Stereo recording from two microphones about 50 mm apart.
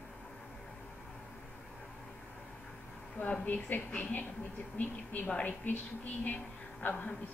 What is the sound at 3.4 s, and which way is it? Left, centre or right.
A woman's voice, left.